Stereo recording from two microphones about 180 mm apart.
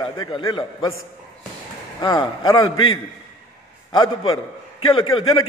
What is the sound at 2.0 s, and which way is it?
Speech, 20° left (ahead or behind).